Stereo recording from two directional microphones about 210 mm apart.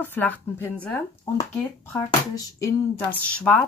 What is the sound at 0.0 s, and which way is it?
Speech, 10° left (ahead or behind).